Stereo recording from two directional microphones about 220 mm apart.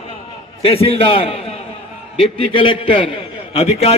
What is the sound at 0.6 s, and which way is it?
A man's voice, 25° left (ahead or behind).